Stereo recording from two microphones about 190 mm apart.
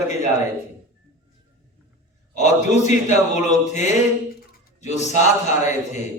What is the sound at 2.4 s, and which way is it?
A man's voice, 40° left (ahead or behind).